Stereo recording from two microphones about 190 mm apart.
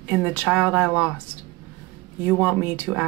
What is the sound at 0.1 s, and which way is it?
Speech, 10° right (ahead or behind).